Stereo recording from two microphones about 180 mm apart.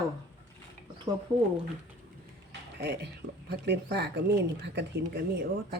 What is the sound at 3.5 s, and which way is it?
A woman's voice, 65° right (ahead or behind).